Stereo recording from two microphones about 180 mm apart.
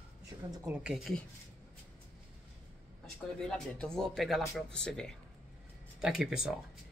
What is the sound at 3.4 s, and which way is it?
Speech, 5° left (ahead or behind).